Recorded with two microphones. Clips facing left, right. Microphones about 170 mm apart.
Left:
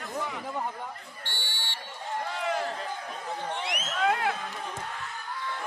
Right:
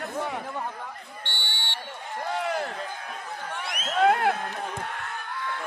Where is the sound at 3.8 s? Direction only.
55° right (ahead or behind).